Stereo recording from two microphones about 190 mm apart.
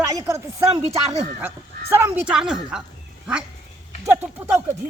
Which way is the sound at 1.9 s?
10° right (ahead or behind).